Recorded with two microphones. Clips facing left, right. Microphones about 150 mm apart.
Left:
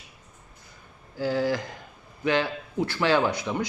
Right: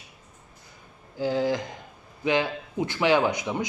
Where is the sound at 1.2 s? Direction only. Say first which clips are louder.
Right 1 dB; 20° right (ahead or behind).